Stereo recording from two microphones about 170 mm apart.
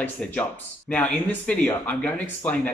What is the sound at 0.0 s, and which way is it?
Speech, 10° left (ahead or behind).